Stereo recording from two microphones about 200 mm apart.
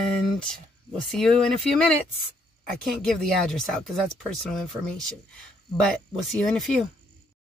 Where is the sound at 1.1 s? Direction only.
5° left (ahead or behind).